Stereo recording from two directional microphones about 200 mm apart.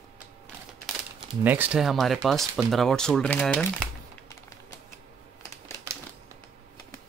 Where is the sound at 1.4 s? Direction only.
10° right (ahead or behind).